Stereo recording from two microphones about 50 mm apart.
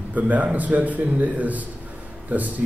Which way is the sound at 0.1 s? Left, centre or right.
Right.